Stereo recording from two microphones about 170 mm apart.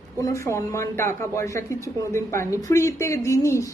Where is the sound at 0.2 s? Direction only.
20° left (ahead or behind).